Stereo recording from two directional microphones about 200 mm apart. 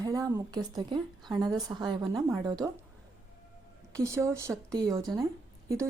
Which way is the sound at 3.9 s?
15° right (ahead or behind).